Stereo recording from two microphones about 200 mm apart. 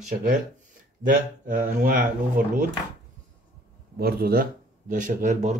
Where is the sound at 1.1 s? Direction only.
40° right (ahead or behind).